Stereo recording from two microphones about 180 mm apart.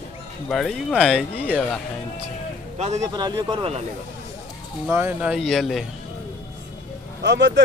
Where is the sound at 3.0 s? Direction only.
25° right (ahead or behind).